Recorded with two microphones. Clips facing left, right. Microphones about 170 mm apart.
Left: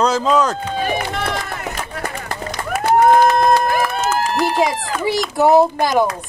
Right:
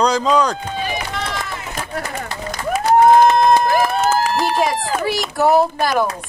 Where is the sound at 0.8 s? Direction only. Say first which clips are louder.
Left 5 dB; 50° left (ahead or behind).